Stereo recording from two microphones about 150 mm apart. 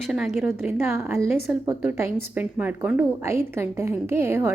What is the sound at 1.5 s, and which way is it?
A woman's voice, 10° right (ahead or behind).